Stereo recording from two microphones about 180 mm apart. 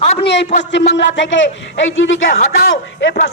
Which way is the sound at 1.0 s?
90° left.